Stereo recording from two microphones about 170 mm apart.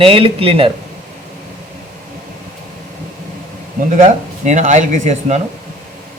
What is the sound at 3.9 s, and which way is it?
Speech, 45° right (ahead or behind).